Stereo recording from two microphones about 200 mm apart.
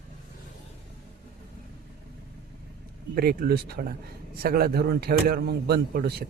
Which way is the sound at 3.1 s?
50° right (ahead or behind).